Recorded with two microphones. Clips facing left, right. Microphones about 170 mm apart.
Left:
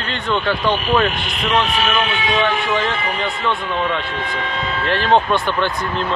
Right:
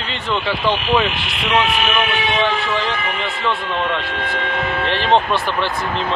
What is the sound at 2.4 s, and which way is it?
Speech, centre (ahead or behind).